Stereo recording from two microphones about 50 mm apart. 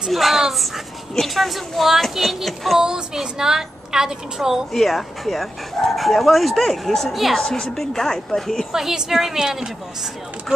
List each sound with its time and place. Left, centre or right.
0.1 s speech: centre
2.8 s a woman's voice: centre
4.7 s speech: centre
7.5 s speech: centre
8.7 s a woman's voice: centre